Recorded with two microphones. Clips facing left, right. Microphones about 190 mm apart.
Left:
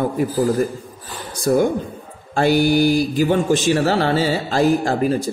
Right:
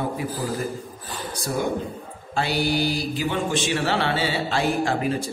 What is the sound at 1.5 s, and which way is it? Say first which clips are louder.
Speech: left 9 dB; 55° left (ahead or behind).